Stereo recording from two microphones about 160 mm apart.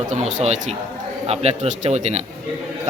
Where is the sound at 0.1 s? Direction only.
50° right (ahead or behind).